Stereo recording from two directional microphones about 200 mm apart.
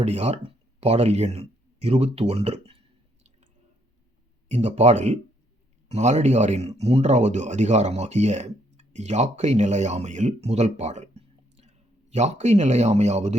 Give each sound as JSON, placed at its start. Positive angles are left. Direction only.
{"t": 0.0, "sound": "speech", "side_deg": -35}
{"t": 4.4, "sound": "speech", "side_deg": -35}